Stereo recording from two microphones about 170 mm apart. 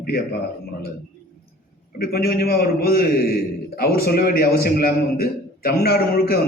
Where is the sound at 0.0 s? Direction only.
60° left (ahead or behind).